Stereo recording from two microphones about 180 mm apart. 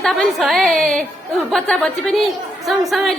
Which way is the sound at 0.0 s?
Centre (ahead or behind).